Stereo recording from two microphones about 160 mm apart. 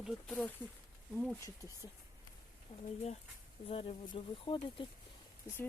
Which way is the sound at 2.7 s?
40° left (ahead or behind).